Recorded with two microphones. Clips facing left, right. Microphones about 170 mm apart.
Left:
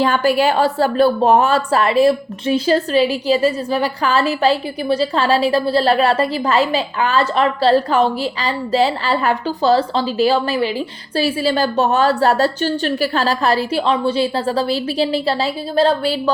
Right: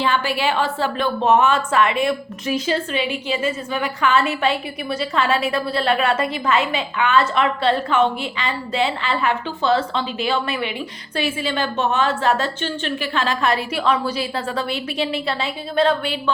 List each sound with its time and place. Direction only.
0.0 s a woman's voice: 40° left (ahead or behind)